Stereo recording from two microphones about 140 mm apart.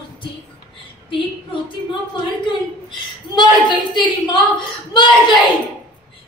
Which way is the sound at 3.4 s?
35° left (ahead or behind).